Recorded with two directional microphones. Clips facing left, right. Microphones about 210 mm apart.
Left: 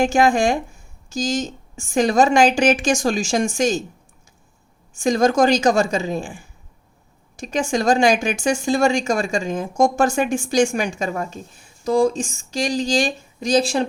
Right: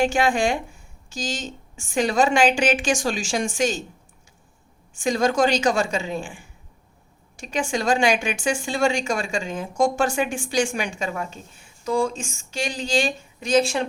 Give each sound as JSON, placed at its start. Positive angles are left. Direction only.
{"t": 0.0, "sound": "a woman's voice", "side_deg": 45}
{"t": 4.9, "sound": "a woman's voice", "side_deg": 45}